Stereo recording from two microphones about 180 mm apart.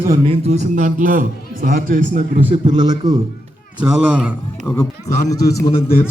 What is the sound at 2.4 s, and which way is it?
Speech, 30° right (ahead or behind).